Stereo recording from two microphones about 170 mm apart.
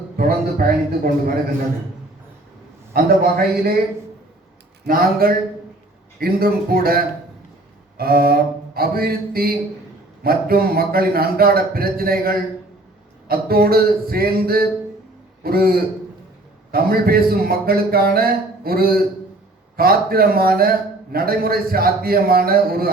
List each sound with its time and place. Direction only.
0.2 s a man's voice: 60° right (ahead or behind)
2.9 s a man's voice: 65° right (ahead or behind)
4.9 s a man's voice: 60° right (ahead or behind)